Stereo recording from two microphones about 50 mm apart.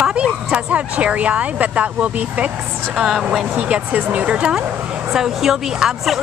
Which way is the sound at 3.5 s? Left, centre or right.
Right.